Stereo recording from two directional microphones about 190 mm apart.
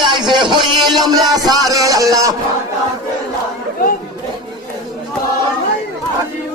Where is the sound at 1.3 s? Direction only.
20° right (ahead or behind).